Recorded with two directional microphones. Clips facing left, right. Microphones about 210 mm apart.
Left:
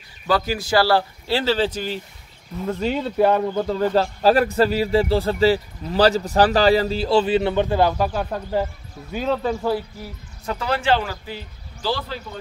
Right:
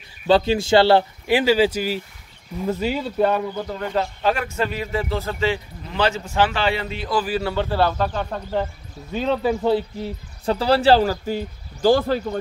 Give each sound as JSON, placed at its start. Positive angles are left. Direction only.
{"t": 0.3, "sound": "speech", "side_deg": -25}
{"t": 3.8, "sound": "a man's voice", "side_deg": 30}
{"t": 9.4, "sound": "speech", "side_deg": -10}
{"t": 9.7, "sound": "speech", "side_deg": -25}